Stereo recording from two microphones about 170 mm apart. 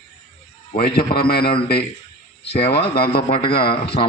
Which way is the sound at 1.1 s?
65° left (ahead or behind).